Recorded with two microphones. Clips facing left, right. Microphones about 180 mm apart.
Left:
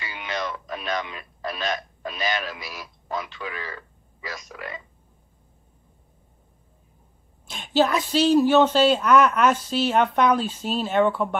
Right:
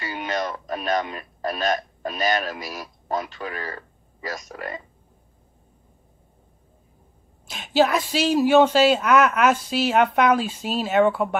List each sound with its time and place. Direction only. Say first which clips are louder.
0.0 s speech: right 4 dB; 45° right (ahead or behind)
7.4 s speech: right 2 dB; 5° right (ahead or behind)